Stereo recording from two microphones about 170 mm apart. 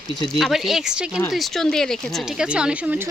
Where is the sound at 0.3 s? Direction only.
Centre (ahead or behind).